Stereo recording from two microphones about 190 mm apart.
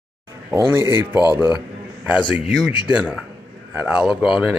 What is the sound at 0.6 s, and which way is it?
Speech, 15° right (ahead or behind).